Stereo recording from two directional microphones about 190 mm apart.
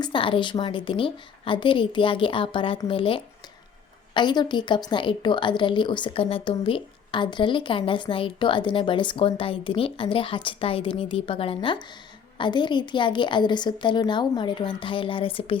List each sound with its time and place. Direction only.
0.0 s a woman's voice: 25° left (ahead or behind)